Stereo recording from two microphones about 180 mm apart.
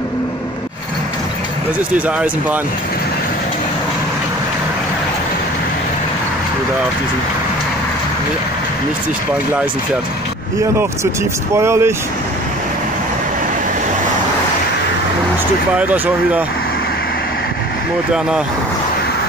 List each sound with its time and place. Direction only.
11.5 s speech: 15° right (ahead or behind)
15.8 s speech: 10° right (ahead or behind)